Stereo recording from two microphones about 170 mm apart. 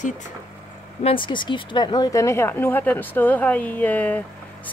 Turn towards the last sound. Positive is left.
turn(degrees=10)  # may be behind; listen again after turning